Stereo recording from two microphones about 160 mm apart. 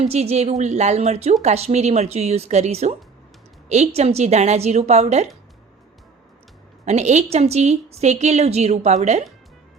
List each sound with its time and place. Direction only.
0.0 s a woman's voice: 40° right (ahead or behind)
6.8 s a woman's voice: 45° right (ahead or behind)